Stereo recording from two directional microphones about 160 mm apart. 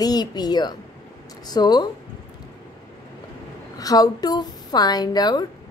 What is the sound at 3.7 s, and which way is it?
A woman's voice, 25° left (ahead or behind).